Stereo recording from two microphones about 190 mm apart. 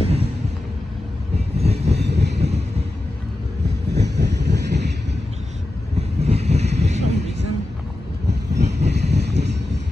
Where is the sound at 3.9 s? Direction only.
65° right (ahead or behind).